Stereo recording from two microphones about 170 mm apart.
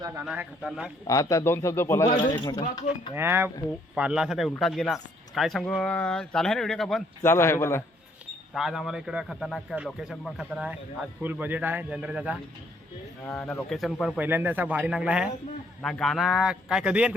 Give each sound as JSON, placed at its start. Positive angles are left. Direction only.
{"t": 0.3, "sound": "speech", "side_deg": -5}
{"t": 1.0, "sound": "a man's voice", "side_deg": 20}
{"t": 3.2, "sound": "a man's voice", "side_deg": -15}
{"t": 7.2, "sound": "a man's voice", "side_deg": 15}
{"t": 8.5, "sound": "a man's voice", "side_deg": 0}
{"t": 13.2, "sound": "speech", "side_deg": 5}
{"t": 14.3, "sound": "a man's voice", "side_deg": -10}